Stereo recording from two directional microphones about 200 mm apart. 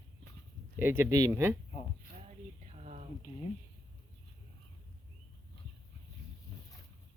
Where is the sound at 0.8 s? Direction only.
10° right (ahead or behind).